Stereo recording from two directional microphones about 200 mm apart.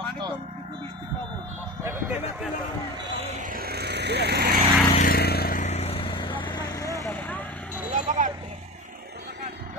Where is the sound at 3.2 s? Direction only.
40° right (ahead or behind).